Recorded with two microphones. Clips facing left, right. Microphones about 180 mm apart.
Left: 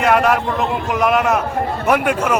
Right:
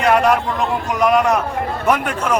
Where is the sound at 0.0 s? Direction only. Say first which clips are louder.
Even; 5° left (ahead or behind).